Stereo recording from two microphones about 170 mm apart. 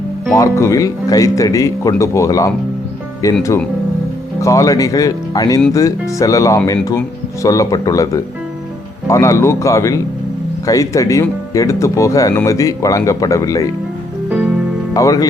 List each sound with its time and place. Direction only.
0.3 s speech: 15° left (ahead or behind)
14.3 s music: 5° right (ahead or behind)
14.9 s speech: 20° left (ahead or behind)